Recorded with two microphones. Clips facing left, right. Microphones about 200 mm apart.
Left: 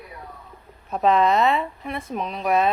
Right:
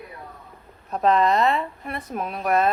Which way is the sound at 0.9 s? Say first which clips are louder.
Left 1 dB; centre (ahead or behind).